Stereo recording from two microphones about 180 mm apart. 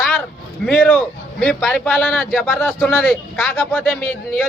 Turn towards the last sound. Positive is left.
turn(degrees=10)  # may be behind; listen again after turning